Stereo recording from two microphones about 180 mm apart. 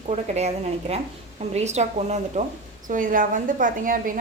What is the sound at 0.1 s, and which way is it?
A woman's voice, 35° right (ahead or behind).